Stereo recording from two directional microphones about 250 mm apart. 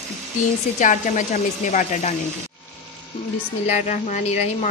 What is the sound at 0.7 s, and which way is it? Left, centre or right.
A woman's voice, left.